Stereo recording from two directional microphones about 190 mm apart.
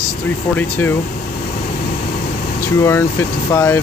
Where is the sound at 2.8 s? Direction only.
15° left (ahead or behind).